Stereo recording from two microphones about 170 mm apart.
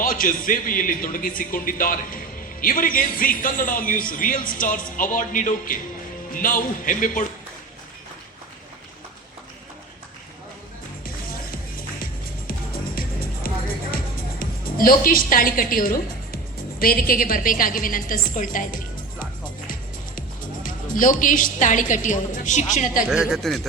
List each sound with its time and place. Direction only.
0.0 s speech: 55° left (ahead or behind)
13.9 s music: 55° left (ahead or behind)
16.8 s speech: 60° left (ahead or behind)
19.6 s music: 50° left (ahead or behind)
22.7 s speech: 45° left (ahead or behind)
23.0 s speech: 5° right (ahead or behind)